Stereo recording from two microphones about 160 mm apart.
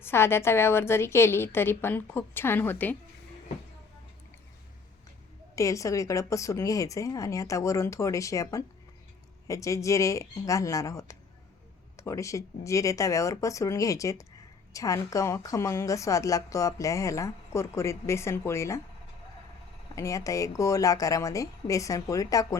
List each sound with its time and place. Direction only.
0.0 s a woman's voice: 15° left (ahead or behind)
5.5 s a woman's voice: 20° left (ahead or behind)
20.0 s a woman's voice: 20° left (ahead or behind)